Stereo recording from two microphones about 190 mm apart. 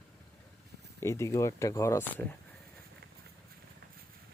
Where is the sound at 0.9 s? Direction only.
15° left (ahead or behind).